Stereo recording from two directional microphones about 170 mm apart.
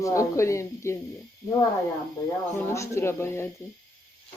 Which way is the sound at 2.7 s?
15° left (ahead or behind).